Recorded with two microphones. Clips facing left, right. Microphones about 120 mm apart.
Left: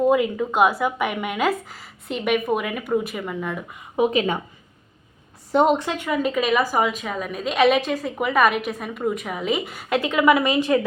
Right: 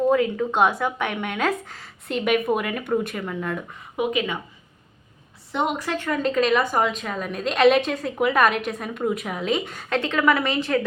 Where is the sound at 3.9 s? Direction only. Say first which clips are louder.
Left 4 dB; 35° left (ahead or behind).